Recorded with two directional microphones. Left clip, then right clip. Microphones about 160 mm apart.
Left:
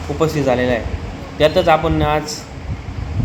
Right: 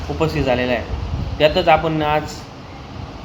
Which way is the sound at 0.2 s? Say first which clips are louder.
Left 2 dB; 5° left (ahead or behind).